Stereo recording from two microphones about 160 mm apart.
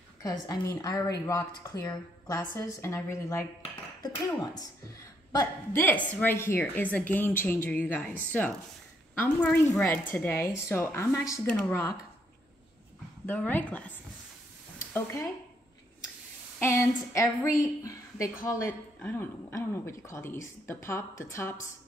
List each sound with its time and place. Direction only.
0.2 s a woman's voice: 25° left (ahead or behind)
5.3 s a woman's voice: 20° left (ahead or behind)
13.3 s a woman's voice: 10° left (ahead or behind)
16.5 s a woman's voice: 15° left (ahead or behind)